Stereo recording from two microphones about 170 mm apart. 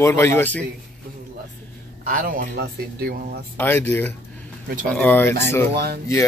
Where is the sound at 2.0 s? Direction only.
55° right (ahead or behind); by 3.4 s 75° right (ahead or behind).